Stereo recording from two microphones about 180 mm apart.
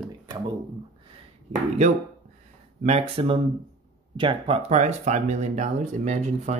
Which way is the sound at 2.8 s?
35° right (ahead or behind).